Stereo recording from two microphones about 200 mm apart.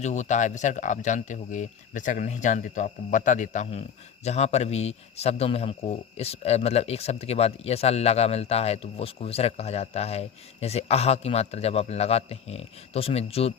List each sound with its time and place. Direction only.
0.0 s speech: 35° left (ahead or behind)